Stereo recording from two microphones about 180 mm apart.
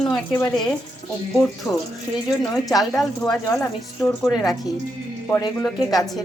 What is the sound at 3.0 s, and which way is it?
Speech, centre (ahead or behind).